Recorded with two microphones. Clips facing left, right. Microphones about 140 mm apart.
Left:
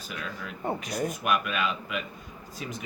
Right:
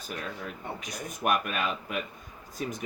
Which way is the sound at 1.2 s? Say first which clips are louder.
Right 2 dB; 45° right (ahead or behind).